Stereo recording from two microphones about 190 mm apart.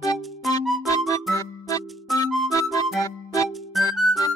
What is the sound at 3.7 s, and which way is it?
Music, centre (ahead or behind).